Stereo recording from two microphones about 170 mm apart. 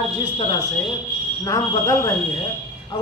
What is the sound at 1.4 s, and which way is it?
Speech, 20° left (ahead or behind).